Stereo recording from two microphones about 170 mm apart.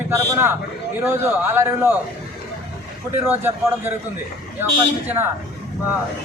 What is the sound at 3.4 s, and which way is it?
Speech, 15° right (ahead or behind).